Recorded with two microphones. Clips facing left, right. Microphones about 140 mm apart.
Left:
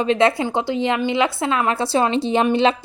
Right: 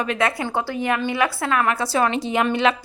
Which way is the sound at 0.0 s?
25° left (ahead or behind).